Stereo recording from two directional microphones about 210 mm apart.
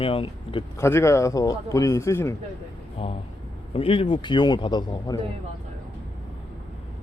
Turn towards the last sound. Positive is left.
turn(degrees=20)  # may be behind; listen again after turning